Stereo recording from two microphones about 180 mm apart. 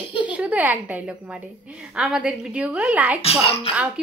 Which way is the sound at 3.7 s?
5° right (ahead or behind).